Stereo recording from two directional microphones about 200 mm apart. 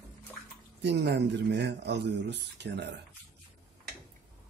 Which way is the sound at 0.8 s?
60° right (ahead or behind).